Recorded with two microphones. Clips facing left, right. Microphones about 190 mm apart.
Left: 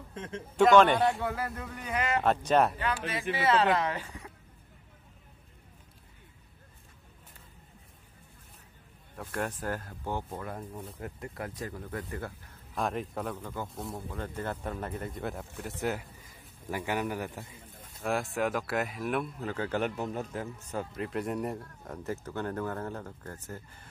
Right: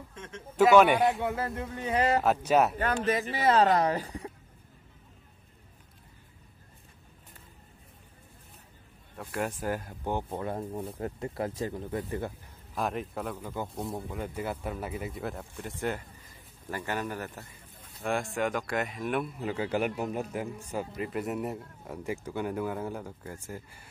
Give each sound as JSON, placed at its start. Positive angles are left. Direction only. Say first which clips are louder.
{"t": 0.1, "sound": "a man's voice", "louder": "left 9 dB", "side_deg": 35}
{"t": 0.6, "sound": "speech", "louder": "right 1 dB", "side_deg": -10}
{"t": 1.2, "sound": "speech", "louder": "right 2 dB", "side_deg": -25}
{"t": 2.2, "sound": "speech", "louder": "right 1 dB", "side_deg": -5}
{"t": 2.8, "sound": "speech", "louder": "right 5 dB", "side_deg": -45}
{"t": 9.1, "sound": "speech", "louder": "right 1 dB", "side_deg": 0}
{"t": 12.7, "sound": "a man's voice", "louder": "even", "side_deg": 0}
{"t": 18.0, "sound": "speech", "louder": "even", "side_deg": 0}